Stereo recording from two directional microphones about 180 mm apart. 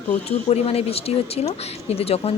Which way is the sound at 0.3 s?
35° left (ahead or behind).